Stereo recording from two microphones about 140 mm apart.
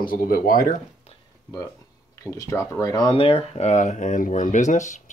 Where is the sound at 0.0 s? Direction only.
90° left.